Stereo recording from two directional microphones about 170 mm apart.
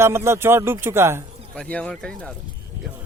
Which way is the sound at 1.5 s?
5° left (ahead or behind).